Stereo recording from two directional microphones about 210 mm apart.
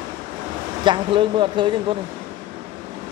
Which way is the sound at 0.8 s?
25° right (ahead or behind).